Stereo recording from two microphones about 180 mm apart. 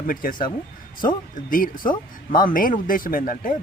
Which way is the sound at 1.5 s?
50° left (ahead or behind).